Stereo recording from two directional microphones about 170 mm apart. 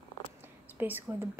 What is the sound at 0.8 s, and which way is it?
Speech, 10° right (ahead or behind).